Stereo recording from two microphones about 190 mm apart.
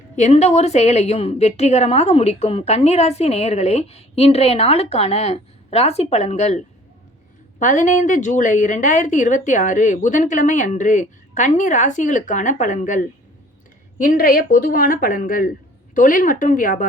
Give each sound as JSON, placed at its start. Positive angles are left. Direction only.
{"t": 0.2, "sound": "a woman's voice", "side_deg": 35}
{"t": 7.6, "sound": "a woman's voice", "side_deg": 40}